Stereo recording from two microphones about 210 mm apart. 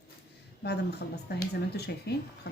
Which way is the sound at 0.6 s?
50° left (ahead or behind).